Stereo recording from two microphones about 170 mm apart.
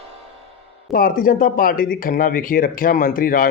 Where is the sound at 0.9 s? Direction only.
55° left (ahead or behind).